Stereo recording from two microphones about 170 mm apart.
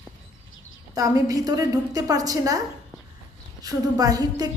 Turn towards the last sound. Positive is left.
turn(degrees=-20)  # may be behind; listen again after turning